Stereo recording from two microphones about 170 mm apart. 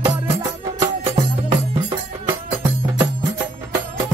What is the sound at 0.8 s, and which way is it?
Music, 25° right (ahead or behind).